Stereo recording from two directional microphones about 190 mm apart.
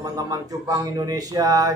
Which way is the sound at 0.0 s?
20° right (ahead or behind).